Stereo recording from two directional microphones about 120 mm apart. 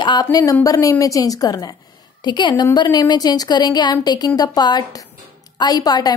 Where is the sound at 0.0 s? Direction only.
35° left (ahead or behind).